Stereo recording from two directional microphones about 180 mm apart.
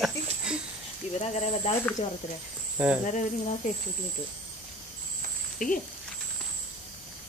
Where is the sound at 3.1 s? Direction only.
45° left (ahead or behind).